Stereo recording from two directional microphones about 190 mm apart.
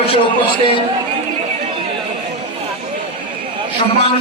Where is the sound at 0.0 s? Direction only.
30° left (ahead or behind).